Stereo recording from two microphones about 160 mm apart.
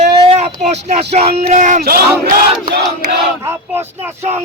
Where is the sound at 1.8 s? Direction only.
75° right (ahead or behind).